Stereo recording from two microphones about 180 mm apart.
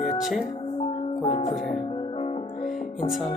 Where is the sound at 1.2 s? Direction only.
30° left (ahead or behind).